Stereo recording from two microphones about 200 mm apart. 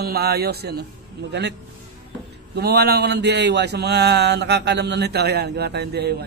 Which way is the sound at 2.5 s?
50° right (ahead or behind).